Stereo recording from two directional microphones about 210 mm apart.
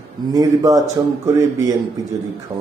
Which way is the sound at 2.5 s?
10° right (ahead or behind).